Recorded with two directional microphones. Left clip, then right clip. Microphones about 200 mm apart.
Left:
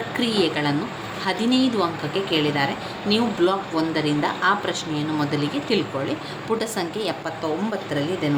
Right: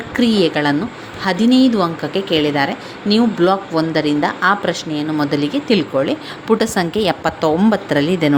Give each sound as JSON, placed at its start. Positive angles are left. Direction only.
{"t": 0.2, "sound": "a woman's voice", "side_deg": -35}